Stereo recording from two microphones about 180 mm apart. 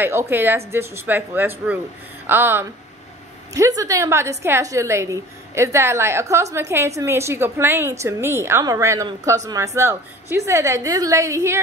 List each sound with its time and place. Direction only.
0.0 s a woman's voice: 15° right (ahead or behind)